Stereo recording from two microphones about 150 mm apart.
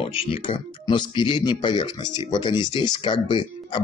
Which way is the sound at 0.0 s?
40° left (ahead or behind).